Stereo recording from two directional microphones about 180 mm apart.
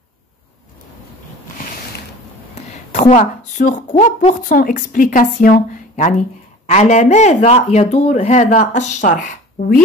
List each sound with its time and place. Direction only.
2.5 s a woman's voice: 40° left (ahead or behind)